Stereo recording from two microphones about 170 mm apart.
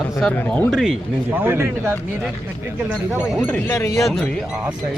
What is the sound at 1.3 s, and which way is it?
Speech, 10° right (ahead or behind).